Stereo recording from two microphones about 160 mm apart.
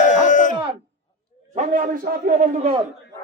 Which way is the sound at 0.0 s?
50° left (ahead or behind).